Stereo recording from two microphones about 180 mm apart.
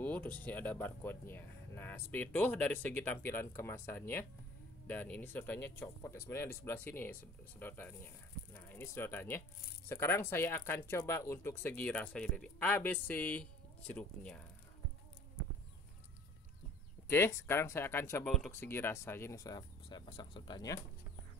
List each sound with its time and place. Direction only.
0.0 s speech: 10° left (ahead or behind)
17.1 s speech: 15° left (ahead or behind)
18.2 s speech: centre (ahead or behind)
18.5 s speech: 15° left (ahead or behind)